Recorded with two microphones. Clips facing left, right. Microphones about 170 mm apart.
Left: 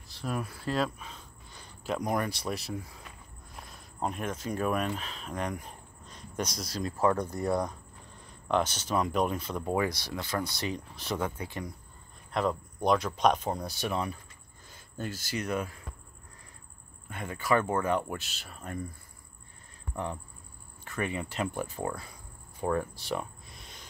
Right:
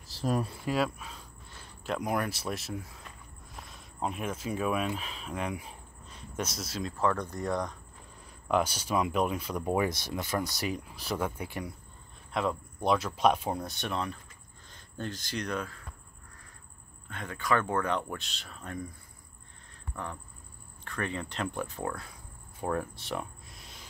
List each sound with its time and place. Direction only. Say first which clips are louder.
0.1 s speech: right 4 dB; 30° right (ahead or behind)
0.6 s speech: right 1 dB; 10° right (ahead or behind)
7.0 s speech: left 3 dB; 10° left (ahead or behind)
8.5 s speech: even; 10° right (ahead or behind)
10.8 s speech: even; 5° right (ahead or behind)
17.1 s speech: left 2 dB; 10° left (ahead or behind)
20.8 s speech: left 2 dB; 10° left (ahead or behind)
22.6 s a sound: left 2 dB; centre (ahead or behind)